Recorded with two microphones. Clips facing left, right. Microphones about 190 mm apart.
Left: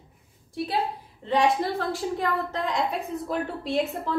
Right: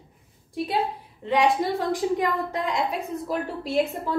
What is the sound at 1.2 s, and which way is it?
A woman's voice, 15° right (ahead or behind).